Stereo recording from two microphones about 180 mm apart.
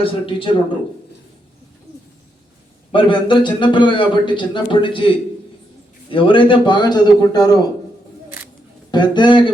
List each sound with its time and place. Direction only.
0.0 s a man's voice: 30° left (ahead or behind)
2.9 s a man's voice: 25° left (ahead or behind)
8.9 s a man's voice: 25° left (ahead or behind)